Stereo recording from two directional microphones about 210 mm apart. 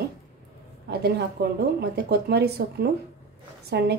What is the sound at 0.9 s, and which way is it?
Speech, 50° right (ahead or behind).